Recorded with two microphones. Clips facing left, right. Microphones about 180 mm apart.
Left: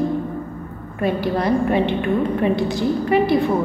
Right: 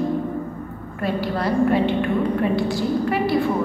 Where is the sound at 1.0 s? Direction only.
20° left (ahead or behind).